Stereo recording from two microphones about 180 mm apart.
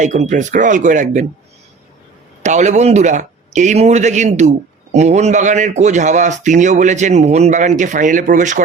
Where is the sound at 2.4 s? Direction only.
40° right (ahead or behind).